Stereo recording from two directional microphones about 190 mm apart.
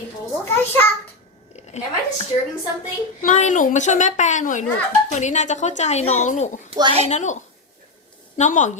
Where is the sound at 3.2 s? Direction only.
40° left (ahead or behind).